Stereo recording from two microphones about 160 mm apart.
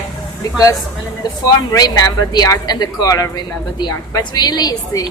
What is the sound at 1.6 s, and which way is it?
Speech, 20° left (ahead or behind).